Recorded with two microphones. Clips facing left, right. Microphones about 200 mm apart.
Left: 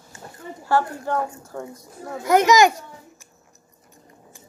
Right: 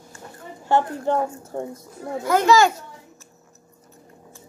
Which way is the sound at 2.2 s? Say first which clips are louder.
Left 1 dB; 20° left (ahead or behind).